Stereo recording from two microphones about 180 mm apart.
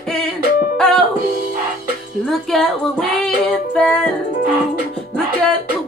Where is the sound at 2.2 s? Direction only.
5° left (ahead or behind).